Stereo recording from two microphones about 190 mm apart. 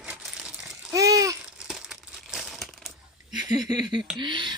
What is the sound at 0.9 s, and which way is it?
Babbling, 15° right (ahead or behind).